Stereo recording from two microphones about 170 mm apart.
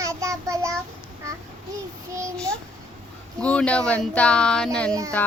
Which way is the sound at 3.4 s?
5° left (ahead or behind).